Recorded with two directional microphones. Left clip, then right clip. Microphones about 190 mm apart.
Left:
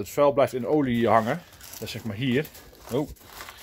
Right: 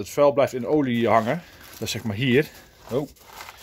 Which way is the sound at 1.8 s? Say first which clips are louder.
Right 5 dB; 45° right (ahead or behind).